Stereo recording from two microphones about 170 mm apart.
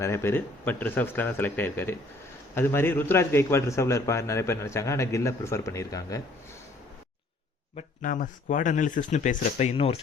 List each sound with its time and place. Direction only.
0.0 s a man's voice: 15° left (ahead or behind)
7.8 s speech: 55° left (ahead or behind); by 10.0 s 35° left (ahead or behind)